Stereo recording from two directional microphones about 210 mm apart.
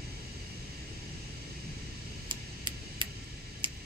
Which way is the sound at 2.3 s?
25° right (ahead or behind).